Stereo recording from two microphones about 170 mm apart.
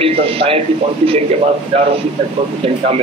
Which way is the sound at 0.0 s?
35° right (ahead or behind).